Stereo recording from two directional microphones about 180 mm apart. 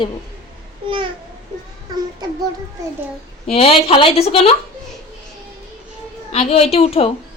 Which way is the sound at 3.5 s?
35° left (ahead or behind).